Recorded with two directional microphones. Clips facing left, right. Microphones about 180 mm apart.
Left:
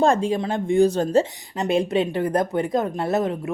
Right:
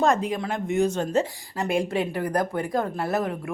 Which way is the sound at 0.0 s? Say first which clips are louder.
Left 3 dB; 30° left (ahead or behind).